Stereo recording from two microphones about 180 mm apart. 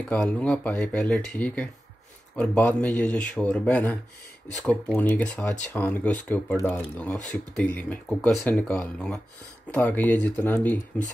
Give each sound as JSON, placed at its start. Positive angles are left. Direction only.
{"t": 0.1, "sound": "speech", "side_deg": 5}